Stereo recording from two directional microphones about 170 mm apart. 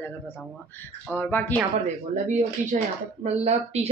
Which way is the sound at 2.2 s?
45° right (ahead or behind).